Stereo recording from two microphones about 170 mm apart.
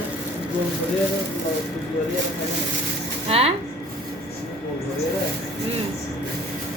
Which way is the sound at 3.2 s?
35° right (ahead or behind).